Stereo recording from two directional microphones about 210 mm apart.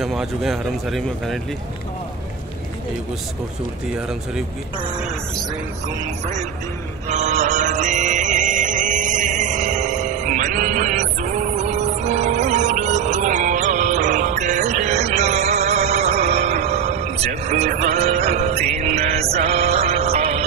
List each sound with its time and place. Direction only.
0.0 s a man's voice: centre (ahead or behind)
3.9 s a man's voice: centre (ahead or behind)
7.1 s music: 35° right (ahead or behind)